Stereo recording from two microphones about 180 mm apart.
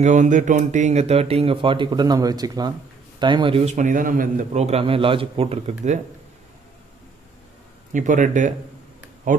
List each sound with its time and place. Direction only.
0.0 s speech: 40° right (ahead or behind)
7.9 s speech: 45° right (ahead or behind)